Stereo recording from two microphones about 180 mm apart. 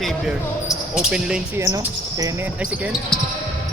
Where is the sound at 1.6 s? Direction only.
20° right (ahead or behind).